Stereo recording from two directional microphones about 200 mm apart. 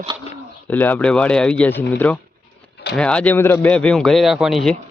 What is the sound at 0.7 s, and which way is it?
A man's voice, 10° left (ahead or behind).